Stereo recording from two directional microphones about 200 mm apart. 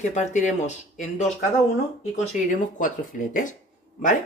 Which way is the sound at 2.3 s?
40° left (ahead or behind).